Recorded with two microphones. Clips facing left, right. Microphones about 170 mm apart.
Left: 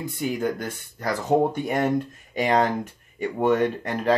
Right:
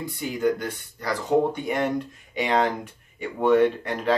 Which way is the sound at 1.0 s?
45° left (ahead or behind).